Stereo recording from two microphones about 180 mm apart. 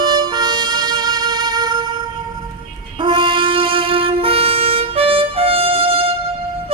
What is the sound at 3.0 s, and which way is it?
Wind instrument, 30° right (ahead or behind).